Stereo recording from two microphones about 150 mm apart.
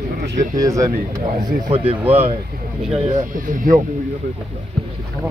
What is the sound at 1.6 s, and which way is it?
Speech, 40° right (ahead or behind).